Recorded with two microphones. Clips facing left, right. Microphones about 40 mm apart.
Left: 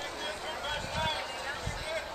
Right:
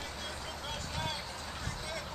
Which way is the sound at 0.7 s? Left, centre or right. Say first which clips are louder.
Left 5 dB; left.